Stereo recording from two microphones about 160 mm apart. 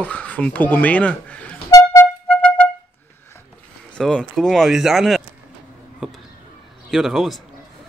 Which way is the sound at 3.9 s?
5° left (ahead or behind).